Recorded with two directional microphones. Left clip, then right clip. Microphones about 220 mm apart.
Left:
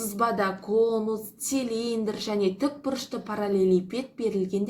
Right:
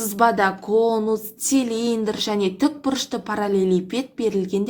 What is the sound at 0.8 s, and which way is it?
Speech, 35° right (ahead or behind).